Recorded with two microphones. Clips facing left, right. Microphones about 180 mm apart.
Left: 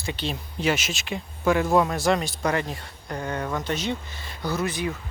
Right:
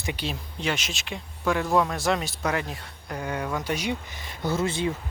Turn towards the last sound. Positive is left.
turn(degrees=-25)  # may be behind; listen again after turning